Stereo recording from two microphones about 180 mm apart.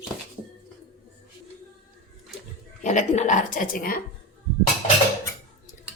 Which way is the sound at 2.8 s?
45° left (ahead or behind).